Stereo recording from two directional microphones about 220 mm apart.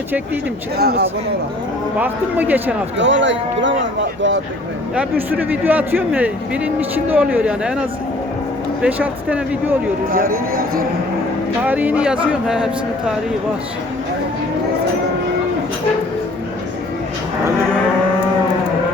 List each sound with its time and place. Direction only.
0.8 s speech: 45° right (ahead or behind)
2.0 s speech: 10° right (ahead or behind)
3.0 s speech: 55° right (ahead or behind)
4.9 s speech: 5° right (ahead or behind)
10.1 s speech: 40° right (ahead or behind)
11.6 s a man's voice: 5° right (ahead or behind)